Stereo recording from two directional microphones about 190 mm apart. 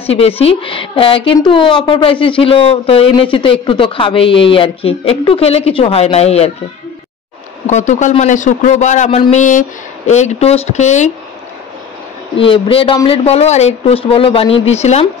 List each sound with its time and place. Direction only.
0.0 s speech: 30° left (ahead or behind)
7.6 s speech: 40° left (ahead or behind)
12.4 s speech: 30° left (ahead or behind)